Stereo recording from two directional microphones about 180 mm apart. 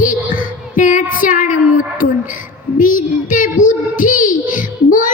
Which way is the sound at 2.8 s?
45° left (ahead or behind).